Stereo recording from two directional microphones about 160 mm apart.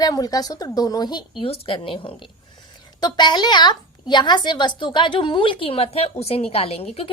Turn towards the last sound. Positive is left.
turn(degrees=40)  # may be behind; listen again after turning